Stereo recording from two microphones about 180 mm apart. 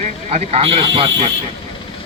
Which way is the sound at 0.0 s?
40° right (ahead or behind).